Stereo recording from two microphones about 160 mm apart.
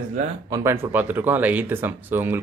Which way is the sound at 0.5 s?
15° right (ahead or behind).